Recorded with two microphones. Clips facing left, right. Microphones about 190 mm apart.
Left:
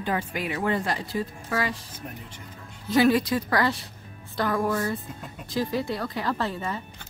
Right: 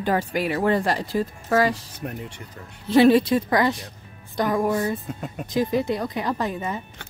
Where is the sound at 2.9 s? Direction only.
25° right (ahead or behind).